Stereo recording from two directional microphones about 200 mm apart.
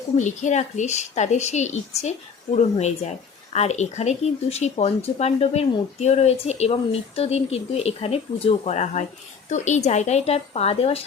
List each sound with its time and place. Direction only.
0.3 s speech: 35° left (ahead or behind)